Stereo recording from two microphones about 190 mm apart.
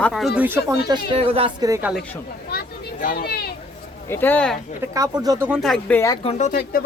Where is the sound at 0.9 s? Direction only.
30° right (ahead or behind).